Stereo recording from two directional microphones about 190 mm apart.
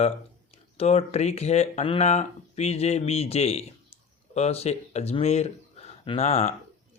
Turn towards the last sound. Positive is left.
turn(degrees=35)  # may be behind; listen again after turning